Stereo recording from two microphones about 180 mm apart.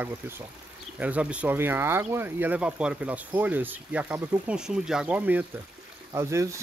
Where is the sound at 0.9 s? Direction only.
5° right (ahead or behind).